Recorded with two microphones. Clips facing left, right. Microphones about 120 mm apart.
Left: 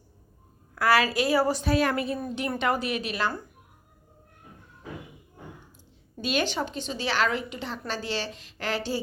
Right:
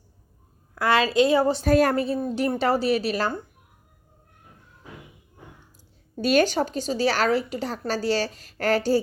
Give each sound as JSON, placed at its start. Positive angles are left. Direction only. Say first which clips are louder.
{"t": 0.8, "sound": "a woman's voice", "louder": "right 3 dB", "side_deg": -25}
{"t": 1.6, "sound": "a woman's voice", "louder": "right 5 dB", "side_deg": -45}
{"t": 6.1, "sound": "a woman's voice", "louder": "right 7 dB", "side_deg": -40}